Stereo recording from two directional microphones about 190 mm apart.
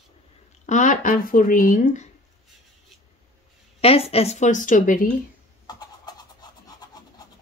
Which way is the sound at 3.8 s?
30° left (ahead or behind).